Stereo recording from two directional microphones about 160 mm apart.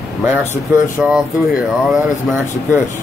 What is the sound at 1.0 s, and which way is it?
Speech, 5° right (ahead or behind).